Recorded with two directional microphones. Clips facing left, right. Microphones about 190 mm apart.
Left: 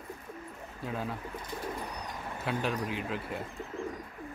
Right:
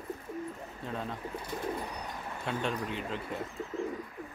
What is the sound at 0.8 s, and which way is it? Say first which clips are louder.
Speech: left 2 dB; 5° left (ahead or behind).